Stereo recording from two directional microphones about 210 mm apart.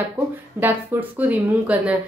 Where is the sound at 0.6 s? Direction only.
10° right (ahead or behind).